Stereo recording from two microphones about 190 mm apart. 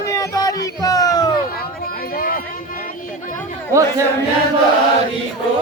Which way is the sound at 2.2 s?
50° left (ahead or behind).